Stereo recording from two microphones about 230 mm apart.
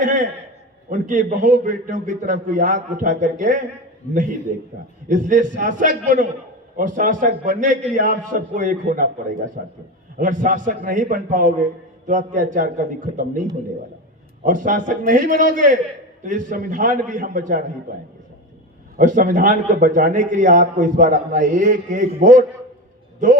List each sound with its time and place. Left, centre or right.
0.9 s a man's voice: right
4.0 s a man's voice: left
4.5 s a man's voice: right
14.4 s a man's voice: right
18.9 s a man's voice: right